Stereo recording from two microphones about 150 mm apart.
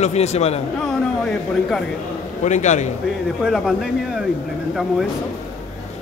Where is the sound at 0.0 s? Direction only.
45° left (ahead or behind).